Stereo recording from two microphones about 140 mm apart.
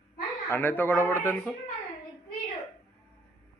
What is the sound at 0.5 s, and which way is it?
Speech, 15° left (ahead or behind).